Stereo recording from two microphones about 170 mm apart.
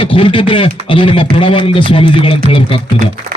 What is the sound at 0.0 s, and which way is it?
Speech, 30° left (ahead or behind).